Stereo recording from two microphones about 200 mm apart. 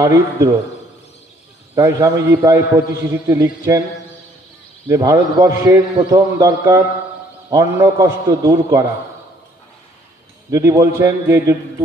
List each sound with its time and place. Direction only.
0.0 s a man's voice: 15° right (ahead or behind)
1.8 s a man's voice: 15° right (ahead or behind)
4.8 s a man's voice: 15° right (ahead or behind)
10.5 s a man's voice: 15° right (ahead or behind)